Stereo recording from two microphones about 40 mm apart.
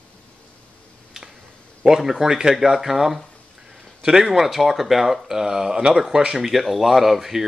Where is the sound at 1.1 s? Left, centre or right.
Centre.